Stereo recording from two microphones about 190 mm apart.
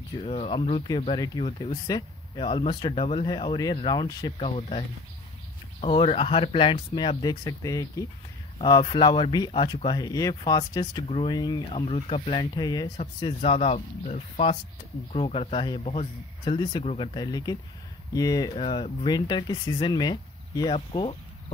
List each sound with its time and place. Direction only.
0.2 s speech: 30° left (ahead or behind)
11.7 s speech: 30° left (ahead or behind)
12.9 s speech: 35° left (ahead or behind)